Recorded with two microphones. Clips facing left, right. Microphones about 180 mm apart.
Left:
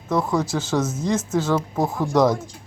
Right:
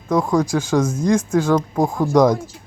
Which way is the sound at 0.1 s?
15° right (ahead or behind).